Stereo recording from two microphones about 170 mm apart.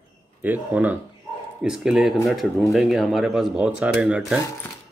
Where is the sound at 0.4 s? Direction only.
10° right (ahead or behind).